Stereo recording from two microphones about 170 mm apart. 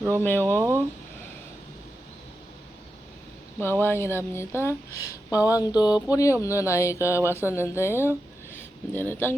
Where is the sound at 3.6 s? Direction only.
15° left (ahead or behind).